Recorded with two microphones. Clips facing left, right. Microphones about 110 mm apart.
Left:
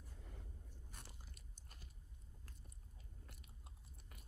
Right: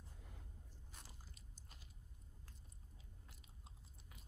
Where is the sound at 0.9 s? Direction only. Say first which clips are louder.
Even; 55° left (ahead or behind).